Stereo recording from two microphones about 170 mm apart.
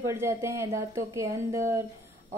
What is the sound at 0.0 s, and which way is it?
A woman's voice, 15° right (ahead or behind).